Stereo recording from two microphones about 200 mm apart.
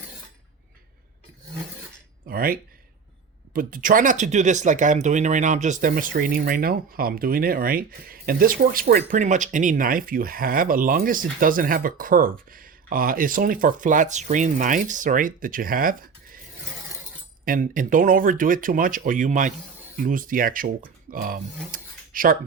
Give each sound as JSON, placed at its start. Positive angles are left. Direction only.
{"t": 2.2, "sound": "speech", "side_deg": -45}
{"t": 17.4, "sound": "speech", "side_deg": -45}